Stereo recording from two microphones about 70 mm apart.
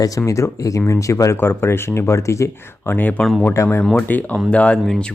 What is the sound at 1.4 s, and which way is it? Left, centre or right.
Speech, left.